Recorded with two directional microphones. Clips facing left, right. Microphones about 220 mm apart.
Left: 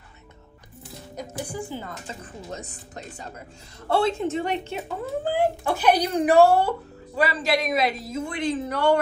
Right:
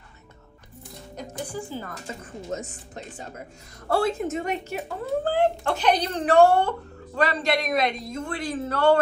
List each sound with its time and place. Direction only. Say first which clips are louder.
1.1 s speech: left 1 dB; 10° left (ahead or behind)
2.5 s a woman's voice: right 6 dB; 35° left (ahead or behind)
5.3 s a man's voice: left 1 dB; 10° left (ahead or behind)
8.3 s speech: left 2 dB; 20° left (ahead or behind)